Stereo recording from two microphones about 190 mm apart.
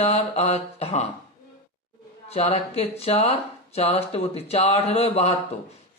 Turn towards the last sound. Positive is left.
turn(degrees=35)  # may be behind; listen again after turning